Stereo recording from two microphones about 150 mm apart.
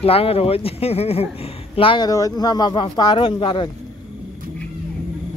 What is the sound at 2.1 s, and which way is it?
Speech, 25° left (ahead or behind).